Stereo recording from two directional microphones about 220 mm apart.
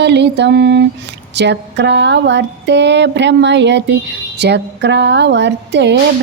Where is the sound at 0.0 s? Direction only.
50° right (ahead or behind).